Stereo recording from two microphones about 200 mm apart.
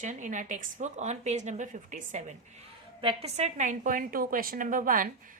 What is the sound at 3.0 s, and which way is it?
A woman's voice, 25° right (ahead or behind).